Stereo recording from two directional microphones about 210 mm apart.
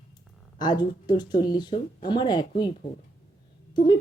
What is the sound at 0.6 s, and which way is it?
A woman's voice, 20° left (ahead or behind).